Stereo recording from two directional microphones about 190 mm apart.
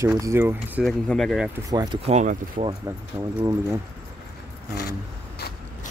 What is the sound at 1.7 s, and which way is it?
Speech, 20° right (ahead or behind).